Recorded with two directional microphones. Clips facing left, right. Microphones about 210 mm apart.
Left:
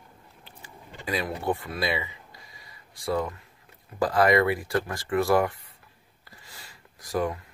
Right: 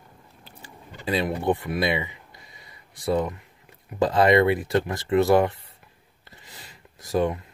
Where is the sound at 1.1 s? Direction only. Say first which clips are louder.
Right 5 dB; 25° right (ahead or behind).